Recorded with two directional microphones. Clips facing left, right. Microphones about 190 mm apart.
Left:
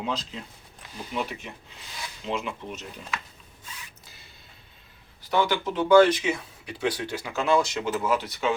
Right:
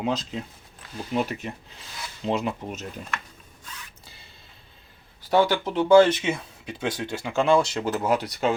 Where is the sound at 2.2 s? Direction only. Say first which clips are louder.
Right 5 dB; 40° right (ahead or behind).